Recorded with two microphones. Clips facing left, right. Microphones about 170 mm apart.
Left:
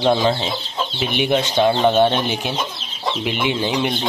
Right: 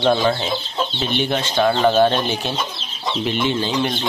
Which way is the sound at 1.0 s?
10° left (ahead or behind).